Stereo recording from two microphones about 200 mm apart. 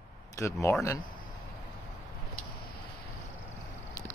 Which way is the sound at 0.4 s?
15° left (ahead or behind).